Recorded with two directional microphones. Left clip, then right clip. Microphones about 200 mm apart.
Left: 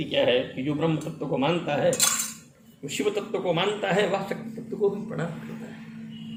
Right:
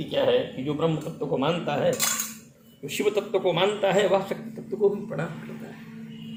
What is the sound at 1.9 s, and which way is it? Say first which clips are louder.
Cutlery: left 2 dB; 20° left (ahead or behind).